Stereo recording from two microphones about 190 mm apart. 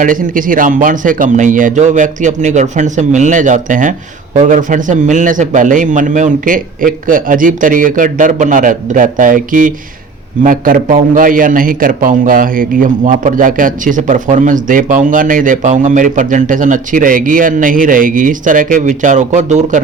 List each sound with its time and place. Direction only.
0.0 s a man's voice: 45° right (ahead or behind)